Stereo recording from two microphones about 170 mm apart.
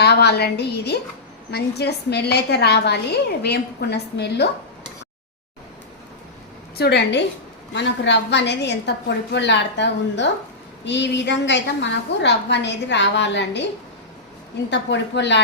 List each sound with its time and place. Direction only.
0.0 s a woman's voice: 75° left (ahead or behind)
6.7 s a woman's voice: 75° left (ahead or behind); by 13.7 s 90° left
14.7 s a woman's voice: 90° left